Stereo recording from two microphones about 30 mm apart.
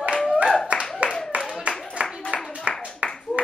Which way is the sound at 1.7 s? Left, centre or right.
Right.